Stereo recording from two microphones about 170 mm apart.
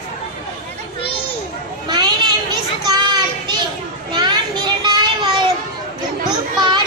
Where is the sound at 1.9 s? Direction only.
25° right (ahead or behind).